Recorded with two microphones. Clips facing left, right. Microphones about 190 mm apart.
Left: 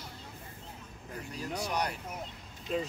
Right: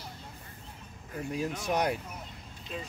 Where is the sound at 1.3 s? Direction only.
50° right (ahead or behind).